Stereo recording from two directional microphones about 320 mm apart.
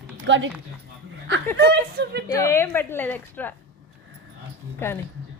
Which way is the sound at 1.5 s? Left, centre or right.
Right.